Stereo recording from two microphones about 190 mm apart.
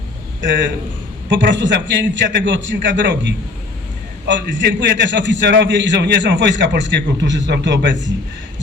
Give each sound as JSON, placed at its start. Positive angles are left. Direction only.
{"t": 0.4, "sound": "a man's voice", "side_deg": -70}